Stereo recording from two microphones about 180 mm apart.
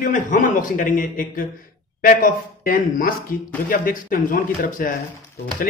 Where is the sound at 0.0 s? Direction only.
45° left (ahead or behind).